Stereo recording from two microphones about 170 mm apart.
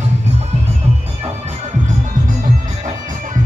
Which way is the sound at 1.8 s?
50° right (ahead or behind).